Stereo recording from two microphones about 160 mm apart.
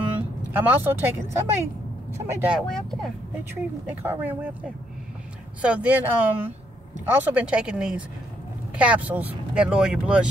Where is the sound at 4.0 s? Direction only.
10° right (ahead or behind).